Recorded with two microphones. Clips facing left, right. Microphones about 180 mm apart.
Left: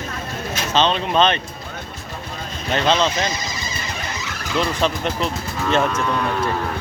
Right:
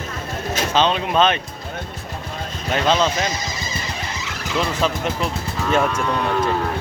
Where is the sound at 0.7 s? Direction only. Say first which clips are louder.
Left 1 dB; 10° right (ahead or behind).